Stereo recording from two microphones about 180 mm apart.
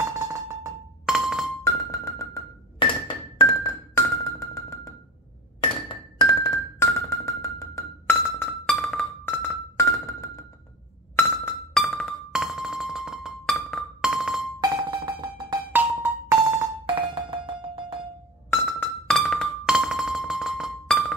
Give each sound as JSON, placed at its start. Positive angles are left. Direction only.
{"t": 0.2, "sound": "cowbell", "side_deg": -20}
{"t": 1.0, "sound": "music", "side_deg": 0}
{"t": 1.6, "sound": "music", "side_deg": 15}
{"t": 2.8, "sound": "music", "side_deg": 30}
{"t": 11.1, "sound": "glass", "side_deg": 10}
{"t": 11.8, "sound": "music", "side_deg": 5}
{"t": 14.6, "sound": "music", "side_deg": -25}
{"t": 15.7, "sound": "music", "side_deg": -10}
{"t": 16.8, "sound": "music", "side_deg": -30}
{"t": 18.5, "sound": "music", "side_deg": 10}